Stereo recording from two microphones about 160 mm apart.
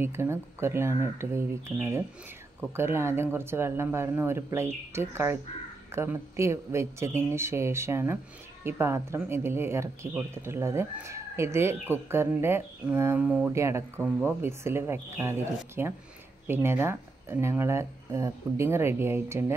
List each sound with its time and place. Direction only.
0.0 s speech: 15° right (ahead or behind)